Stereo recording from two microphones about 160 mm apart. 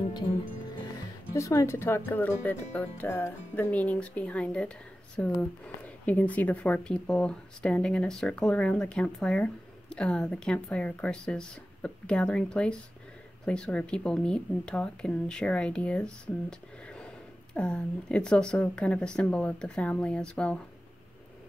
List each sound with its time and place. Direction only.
1.3 s speech: 20° left (ahead or behind)